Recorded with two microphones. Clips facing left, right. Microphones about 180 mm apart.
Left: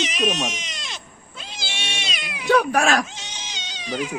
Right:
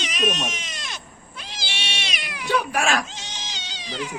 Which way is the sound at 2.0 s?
20° left (ahead or behind).